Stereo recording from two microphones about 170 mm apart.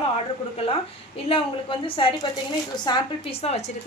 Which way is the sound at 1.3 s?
30° left (ahead or behind).